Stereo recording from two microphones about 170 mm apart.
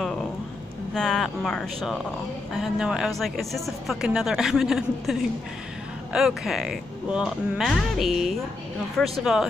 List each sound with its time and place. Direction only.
0.9 s speech: 5° left (ahead or behind)